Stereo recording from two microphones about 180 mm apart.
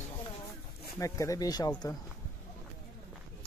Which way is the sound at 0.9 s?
15° left (ahead or behind).